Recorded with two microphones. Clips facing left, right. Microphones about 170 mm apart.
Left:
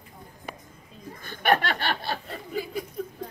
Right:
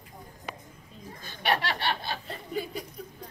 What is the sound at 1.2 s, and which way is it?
Chuckle, 55° left (ahead or behind).